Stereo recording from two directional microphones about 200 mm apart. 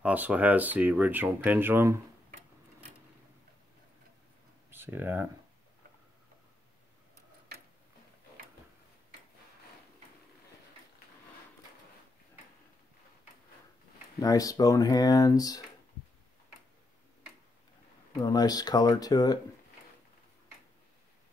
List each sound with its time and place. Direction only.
0.0 s speech: 5° right (ahead or behind)
4.6 s speech: 10° right (ahead or behind)
14.2 s speech: 15° left (ahead or behind)
18.2 s speech: 20° left (ahead or behind)